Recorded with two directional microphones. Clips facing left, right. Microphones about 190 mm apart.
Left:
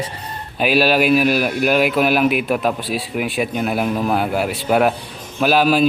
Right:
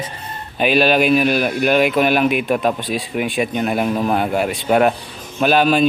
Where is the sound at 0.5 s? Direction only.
5° left (ahead or behind).